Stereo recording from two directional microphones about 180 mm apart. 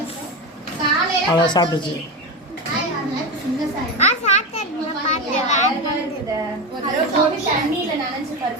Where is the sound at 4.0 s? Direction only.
40° left (ahead or behind).